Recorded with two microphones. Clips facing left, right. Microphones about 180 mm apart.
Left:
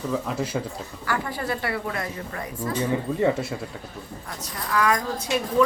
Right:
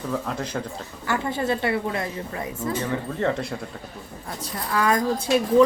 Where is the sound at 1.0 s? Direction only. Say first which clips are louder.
Right 3 dB; 25° right (ahead or behind).